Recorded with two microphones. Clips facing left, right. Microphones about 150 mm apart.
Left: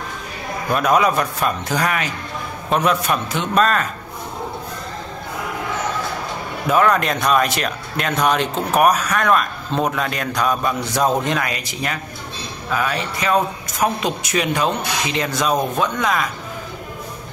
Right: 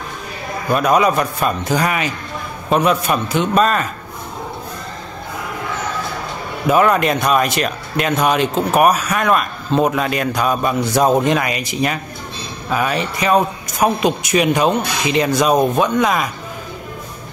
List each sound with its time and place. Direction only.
0.7 s a man's voice: centre (ahead or behind)
6.7 s speech: 5° right (ahead or behind)